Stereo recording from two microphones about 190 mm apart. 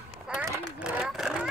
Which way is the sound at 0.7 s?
5° right (ahead or behind).